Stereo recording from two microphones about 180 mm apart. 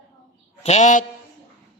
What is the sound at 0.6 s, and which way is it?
Speech, 40° left (ahead or behind).